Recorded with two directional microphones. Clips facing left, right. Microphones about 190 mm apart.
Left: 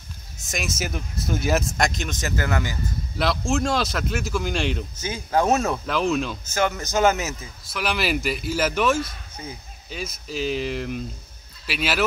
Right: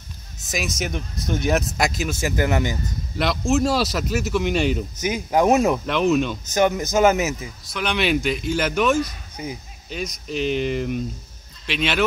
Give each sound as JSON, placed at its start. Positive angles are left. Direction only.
{"t": 0.5, "sound": "speech", "side_deg": 0}
{"t": 3.2, "sound": "speech", "side_deg": 0}
{"t": 5.0, "sound": "speech", "side_deg": -15}
{"t": 5.9, "sound": "speech", "side_deg": 0}
{"t": 6.5, "sound": "speech", "side_deg": -15}
{"t": 7.6, "sound": "speech", "side_deg": 0}
{"t": 9.4, "sound": "speech", "side_deg": -15}
{"t": 9.8, "sound": "speech", "side_deg": 5}